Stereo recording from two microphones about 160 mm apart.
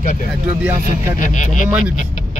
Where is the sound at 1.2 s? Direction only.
55° left (ahead or behind).